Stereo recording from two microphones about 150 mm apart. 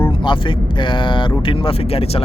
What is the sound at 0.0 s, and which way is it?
Speech, 35° left (ahead or behind).